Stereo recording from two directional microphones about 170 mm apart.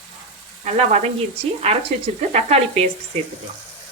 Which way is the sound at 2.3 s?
35° right (ahead or behind).